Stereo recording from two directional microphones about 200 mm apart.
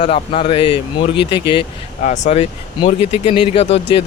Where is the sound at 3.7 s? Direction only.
60° left (ahead or behind).